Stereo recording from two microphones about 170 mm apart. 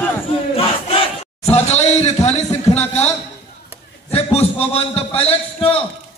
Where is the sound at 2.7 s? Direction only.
40° left (ahead or behind).